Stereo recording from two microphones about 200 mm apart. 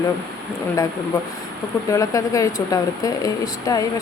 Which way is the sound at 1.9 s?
15° left (ahead or behind).